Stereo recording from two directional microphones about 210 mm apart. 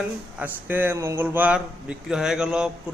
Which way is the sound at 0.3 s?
10° right (ahead or behind).